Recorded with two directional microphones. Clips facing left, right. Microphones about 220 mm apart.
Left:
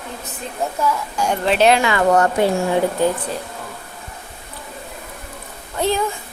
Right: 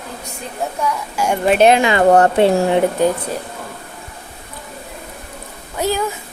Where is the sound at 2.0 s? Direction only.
35° right (ahead or behind).